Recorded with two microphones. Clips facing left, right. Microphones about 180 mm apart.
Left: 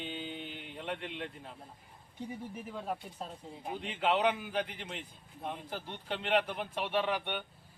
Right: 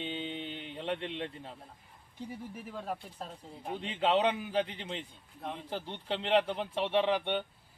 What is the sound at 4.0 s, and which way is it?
A man's voice, 25° right (ahead or behind).